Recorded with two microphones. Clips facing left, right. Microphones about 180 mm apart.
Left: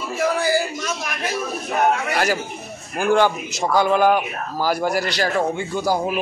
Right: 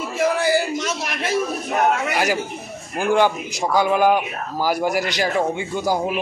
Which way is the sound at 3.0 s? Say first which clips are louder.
Even; 15° right (ahead or behind).